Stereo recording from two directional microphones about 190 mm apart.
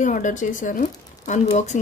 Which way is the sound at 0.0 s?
40° left (ahead or behind).